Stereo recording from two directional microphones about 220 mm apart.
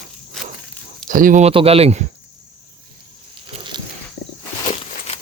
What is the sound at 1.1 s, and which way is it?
Speech, 35° right (ahead or behind).